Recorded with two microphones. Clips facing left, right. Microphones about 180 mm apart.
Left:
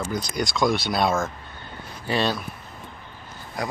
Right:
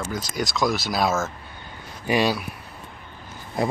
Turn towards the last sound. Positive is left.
turn(degrees=-25)  # may be behind; listen again after turning